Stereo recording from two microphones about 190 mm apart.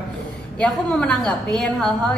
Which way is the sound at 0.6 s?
5° left (ahead or behind).